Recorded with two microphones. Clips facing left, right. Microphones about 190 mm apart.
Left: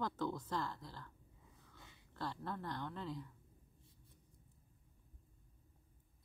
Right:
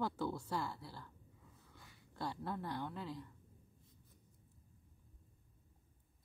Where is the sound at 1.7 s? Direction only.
20° left (ahead or behind).